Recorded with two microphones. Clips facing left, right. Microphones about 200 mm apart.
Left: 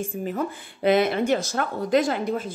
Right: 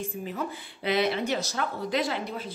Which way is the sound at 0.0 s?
50° left (ahead or behind).